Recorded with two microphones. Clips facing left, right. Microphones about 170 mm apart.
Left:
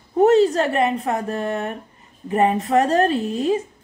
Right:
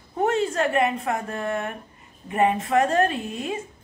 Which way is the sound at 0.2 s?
35° left (ahead or behind).